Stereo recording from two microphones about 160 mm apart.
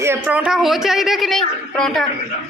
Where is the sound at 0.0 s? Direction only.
15° right (ahead or behind); by 2.0 s 5° left (ahead or behind).